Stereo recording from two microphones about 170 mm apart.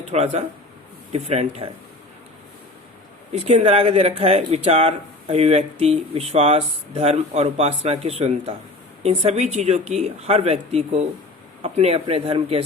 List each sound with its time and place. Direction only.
0.1 s speech: 40° right (ahead or behind)
3.3 s speech: 40° right (ahead or behind)